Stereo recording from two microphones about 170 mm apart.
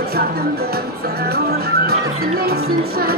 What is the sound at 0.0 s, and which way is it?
Music, 65° right (ahead or behind).